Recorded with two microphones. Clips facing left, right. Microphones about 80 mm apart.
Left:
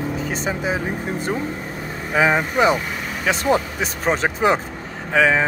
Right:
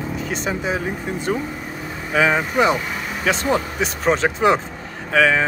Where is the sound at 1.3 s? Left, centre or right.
Centre.